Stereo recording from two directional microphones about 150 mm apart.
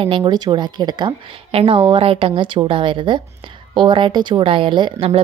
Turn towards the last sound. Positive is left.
turn(degrees=-40)  # may be behind; listen again after turning